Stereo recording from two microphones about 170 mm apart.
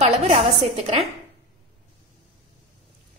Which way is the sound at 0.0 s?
35° right (ahead or behind).